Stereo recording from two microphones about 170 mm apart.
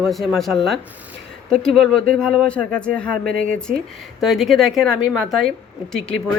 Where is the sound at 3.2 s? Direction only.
55° right (ahead or behind).